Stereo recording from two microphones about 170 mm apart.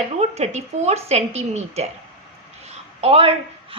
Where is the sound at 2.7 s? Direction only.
35° right (ahead or behind).